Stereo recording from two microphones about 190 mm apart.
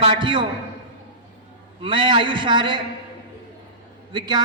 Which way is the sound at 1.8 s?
25° right (ahead or behind).